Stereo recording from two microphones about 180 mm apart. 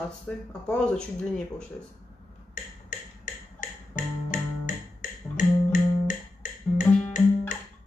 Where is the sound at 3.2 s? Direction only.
45° left (ahead or behind).